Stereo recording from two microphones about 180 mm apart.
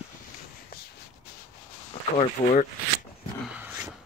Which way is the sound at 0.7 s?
60° left (ahead or behind).